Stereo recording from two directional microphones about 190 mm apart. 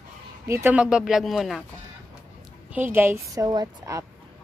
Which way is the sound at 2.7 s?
10° right (ahead or behind).